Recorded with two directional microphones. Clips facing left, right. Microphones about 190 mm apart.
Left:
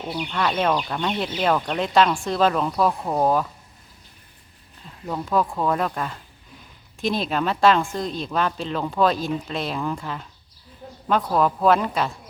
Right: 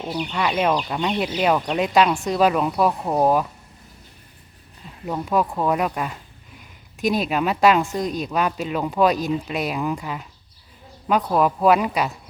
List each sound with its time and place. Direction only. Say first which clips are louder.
0.1 s speech: right 1 dB; centre (ahead or behind)
5.0 s speech: right 1 dB; 10° right (ahead or behind)
11.3 s speech: right 1 dB; 10° right (ahead or behind)